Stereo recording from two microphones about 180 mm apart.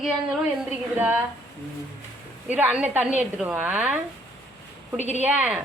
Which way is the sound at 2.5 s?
10° right (ahead or behind).